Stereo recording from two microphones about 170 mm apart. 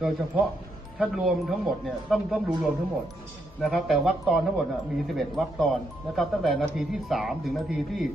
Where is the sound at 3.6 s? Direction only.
Centre (ahead or behind).